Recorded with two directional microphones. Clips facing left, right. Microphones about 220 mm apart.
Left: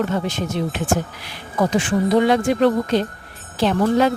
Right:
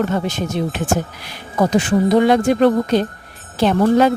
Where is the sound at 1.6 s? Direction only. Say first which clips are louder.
Right 3 dB; 40° right (ahead or behind).